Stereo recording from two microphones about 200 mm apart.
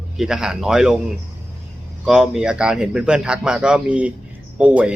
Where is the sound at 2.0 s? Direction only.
Centre (ahead or behind).